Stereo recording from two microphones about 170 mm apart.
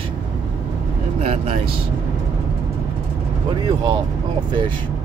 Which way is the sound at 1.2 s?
35° right (ahead or behind).